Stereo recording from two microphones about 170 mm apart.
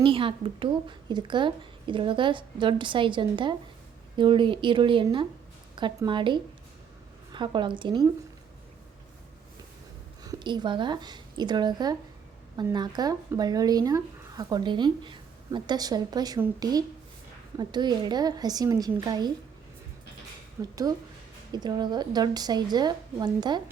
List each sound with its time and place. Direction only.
0.0 s speech: 30° right (ahead or behind)
10.2 s speech: 25° right (ahead or behind)
20.6 s speech: 20° right (ahead or behind)